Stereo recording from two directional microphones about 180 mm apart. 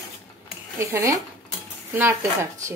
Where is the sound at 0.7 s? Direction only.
15° right (ahead or behind).